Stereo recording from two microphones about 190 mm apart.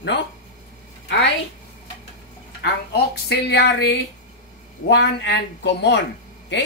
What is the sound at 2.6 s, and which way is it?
Speech, 60° left (ahead or behind).